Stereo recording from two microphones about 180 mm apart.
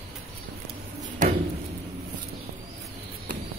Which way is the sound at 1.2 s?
45° right (ahead or behind).